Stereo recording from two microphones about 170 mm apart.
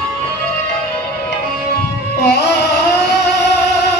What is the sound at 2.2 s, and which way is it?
Music, 80° left.